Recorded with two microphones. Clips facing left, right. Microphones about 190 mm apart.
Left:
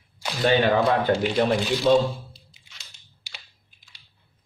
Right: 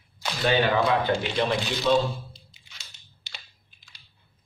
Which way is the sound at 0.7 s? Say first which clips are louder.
Left 3 dB; 45° left (ahead or behind).